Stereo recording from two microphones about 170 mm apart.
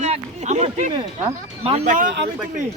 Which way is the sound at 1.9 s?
50° right (ahead or behind).